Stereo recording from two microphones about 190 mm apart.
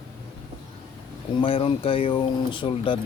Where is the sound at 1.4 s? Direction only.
30° left (ahead or behind).